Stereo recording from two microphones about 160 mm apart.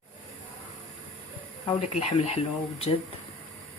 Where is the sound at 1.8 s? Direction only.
40° left (ahead or behind).